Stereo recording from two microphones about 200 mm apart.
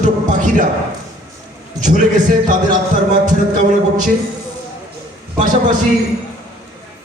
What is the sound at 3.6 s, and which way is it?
Speech, 40° right (ahead or behind).